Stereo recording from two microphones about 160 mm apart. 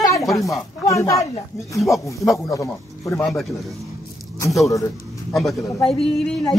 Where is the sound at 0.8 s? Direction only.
20° left (ahead or behind).